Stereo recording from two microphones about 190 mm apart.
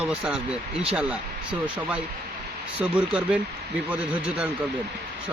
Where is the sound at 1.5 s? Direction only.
5° right (ahead or behind).